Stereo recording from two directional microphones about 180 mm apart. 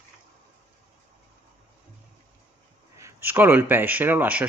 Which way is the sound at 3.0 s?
10° right (ahead or behind).